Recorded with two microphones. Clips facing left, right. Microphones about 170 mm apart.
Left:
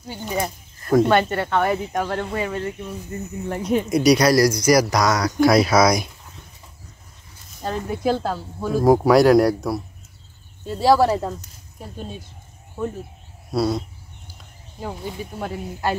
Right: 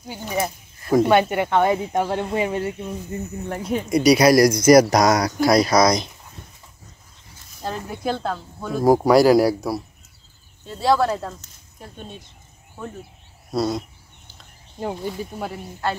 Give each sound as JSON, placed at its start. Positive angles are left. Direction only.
{"t": 0.0, "sound": "speech", "side_deg": -10}
{"t": 3.4, "sound": "speech", "side_deg": 10}
{"t": 4.3, "sound": "speech", "side_deg": -20}
{"t": 5.0, "sound": "speech", "side_deg": -35}
{"t": 5.4, "sound": "speech", "side_deg": 5}
{"t": 7.6, "sound": "speech", "side_deg": 0}
{"t": 10.7, "sound": "speech", "side_deg": 10}
{"t": 13.5, "sound": "a sound", "side_deg": 5}
{"t": 15.3, "sound": "speech", "side_deg": -5}
{"t": 15.8, "sound": "speech", "side_deg": 10}